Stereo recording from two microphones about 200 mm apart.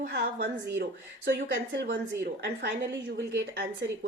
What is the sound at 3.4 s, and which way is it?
Speech, 55° right (ahead or behind).